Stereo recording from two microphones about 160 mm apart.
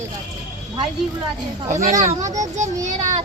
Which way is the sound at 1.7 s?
50° right (ahead or behind).